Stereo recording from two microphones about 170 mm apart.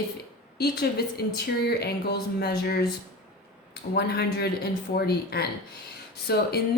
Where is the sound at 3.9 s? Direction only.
70° left (ahead or behind).